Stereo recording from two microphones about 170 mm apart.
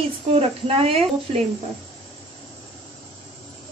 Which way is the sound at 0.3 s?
35° right (ahead or behind).